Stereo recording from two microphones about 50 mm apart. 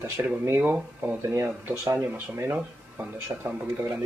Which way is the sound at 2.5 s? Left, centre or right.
Right.